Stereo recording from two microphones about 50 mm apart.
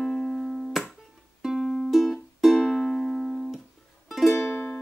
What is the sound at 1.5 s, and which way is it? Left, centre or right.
Music, centre.